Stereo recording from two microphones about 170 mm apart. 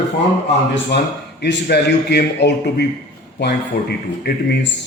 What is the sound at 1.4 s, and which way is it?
A man's voice, 75° left (ahead or behind).